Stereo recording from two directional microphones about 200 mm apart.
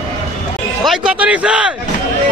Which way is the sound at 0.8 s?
5° right (ahead or behind).